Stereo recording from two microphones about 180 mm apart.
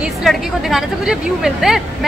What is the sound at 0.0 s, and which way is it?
A woman's voice, centre (ahead or behind).